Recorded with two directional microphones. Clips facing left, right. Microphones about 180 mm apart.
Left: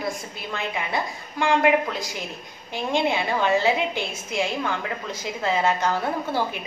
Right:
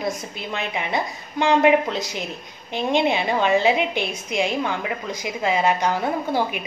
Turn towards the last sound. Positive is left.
turn(degrees=-15)  # may be behind; listen again after turning